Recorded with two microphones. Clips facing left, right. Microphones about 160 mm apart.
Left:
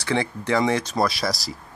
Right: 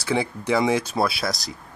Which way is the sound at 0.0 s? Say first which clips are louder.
Even; 10° right (ahead or behind).